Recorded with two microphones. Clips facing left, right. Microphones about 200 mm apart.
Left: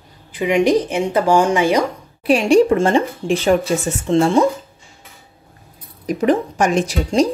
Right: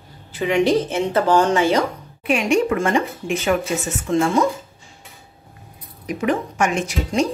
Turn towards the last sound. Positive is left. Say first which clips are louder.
# left 4 dB
turn(degrees=35)  # may be behind; listen again after turning